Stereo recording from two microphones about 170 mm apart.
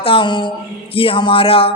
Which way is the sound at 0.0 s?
30° left (ahead or behind).